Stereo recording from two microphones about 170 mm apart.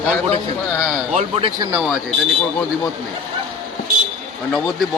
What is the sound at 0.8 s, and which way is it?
Speech, 5° left (ahead or behind).